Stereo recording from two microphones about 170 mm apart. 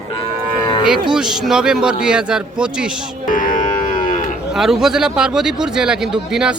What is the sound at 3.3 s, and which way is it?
Music, 50° left (ahead or behind).